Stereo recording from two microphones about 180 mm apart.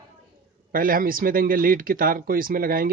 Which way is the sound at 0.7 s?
50° right (ahead or behind).